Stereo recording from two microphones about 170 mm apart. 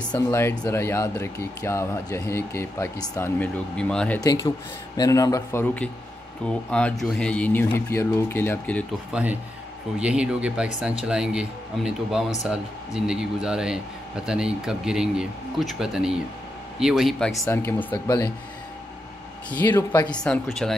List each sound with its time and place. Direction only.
0.1 s speech: 15° left (ahead or behind)
4.2 s speech: 20° left (ahead or behind)
9.1 s speech: 10° right (ahead or behind)
17.5 s speech: 15° left (ahead or behind)
19.5 s speech: 10° left (ahead or behind)